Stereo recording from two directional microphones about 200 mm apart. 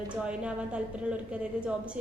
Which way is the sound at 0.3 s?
5° right (ahead or behind).